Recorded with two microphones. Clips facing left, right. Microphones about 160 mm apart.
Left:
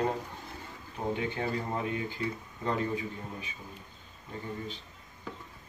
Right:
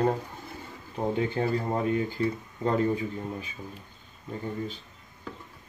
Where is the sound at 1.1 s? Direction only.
40° right (ahead or behind).